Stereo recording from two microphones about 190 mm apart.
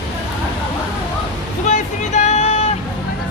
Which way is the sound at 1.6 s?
40° left (ahead or behind).